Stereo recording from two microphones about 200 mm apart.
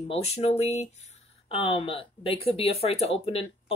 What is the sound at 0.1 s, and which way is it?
Speech, 30° left (ahead or behind).